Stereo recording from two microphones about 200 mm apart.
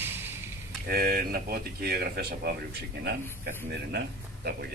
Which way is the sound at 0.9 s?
50° right (ahead or behind).